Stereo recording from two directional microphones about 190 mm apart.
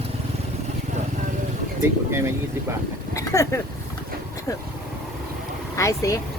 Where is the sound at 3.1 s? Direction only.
15° left (ahead or behind).